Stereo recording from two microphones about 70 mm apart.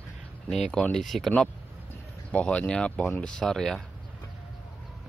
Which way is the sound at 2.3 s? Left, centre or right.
Centre.